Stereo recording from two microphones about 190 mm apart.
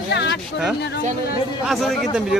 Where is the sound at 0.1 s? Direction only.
65° left (ahead or behind).